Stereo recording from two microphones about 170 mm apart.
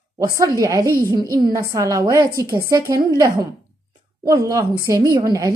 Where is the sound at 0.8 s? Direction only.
60° right (ahead or behind).